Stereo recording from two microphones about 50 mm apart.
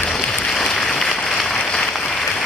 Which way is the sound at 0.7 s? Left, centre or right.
Left.